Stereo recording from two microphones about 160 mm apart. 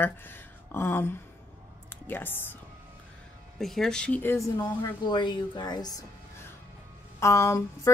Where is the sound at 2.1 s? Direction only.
15° left (ahead or behind).